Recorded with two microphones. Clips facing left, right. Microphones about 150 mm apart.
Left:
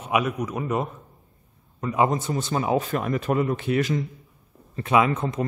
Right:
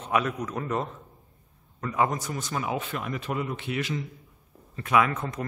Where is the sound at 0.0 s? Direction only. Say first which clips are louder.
Left 3 dB; 10° left (ahead or behind); by 4.0 s 45° left (ahead or behind).